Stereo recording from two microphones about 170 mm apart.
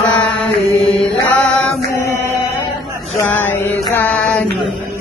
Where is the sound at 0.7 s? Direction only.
35° left (ahead or behind).